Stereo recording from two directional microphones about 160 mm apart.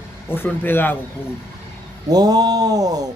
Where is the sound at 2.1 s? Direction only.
25° right (ahead or behind).